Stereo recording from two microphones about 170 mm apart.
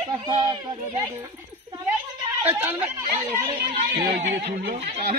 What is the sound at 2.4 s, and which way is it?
Speech, 10° right (ahead or behind).